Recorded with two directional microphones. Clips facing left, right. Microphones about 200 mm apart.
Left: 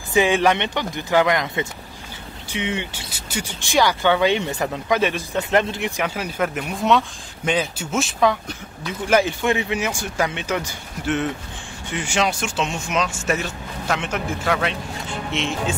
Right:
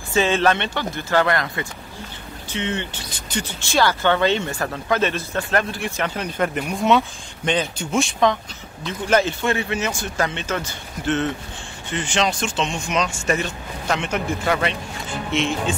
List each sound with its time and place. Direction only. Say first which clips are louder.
0.1 s speech: left 1 dB; 15° left (ahead or behind)